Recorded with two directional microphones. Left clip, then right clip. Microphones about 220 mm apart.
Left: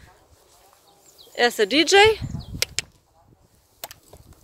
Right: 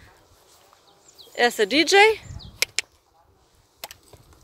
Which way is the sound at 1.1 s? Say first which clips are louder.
Even; 5° left (ahead or behind).